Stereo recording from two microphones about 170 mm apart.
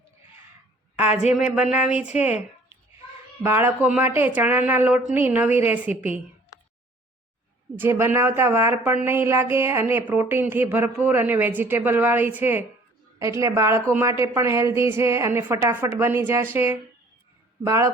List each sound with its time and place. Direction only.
0.9 s speech: 10° right (ahead or behind)
3.4 s speech: 10° right (ahead or behind)
7.8 s speech: 15° right (ahead or behind)